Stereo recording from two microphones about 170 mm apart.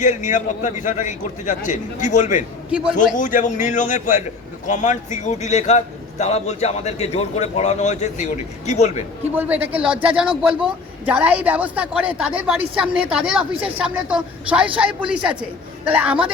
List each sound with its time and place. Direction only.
0.0 s a man's voice: 45° left (ahead or behind)
9.3 s a woman's voice: 10° right (ahead or behind)